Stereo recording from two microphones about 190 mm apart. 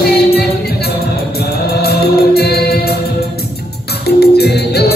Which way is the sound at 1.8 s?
55° left (ahead or behind).